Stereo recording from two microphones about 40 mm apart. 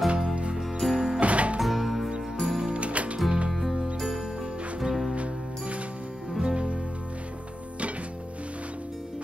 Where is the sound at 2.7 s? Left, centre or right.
Right.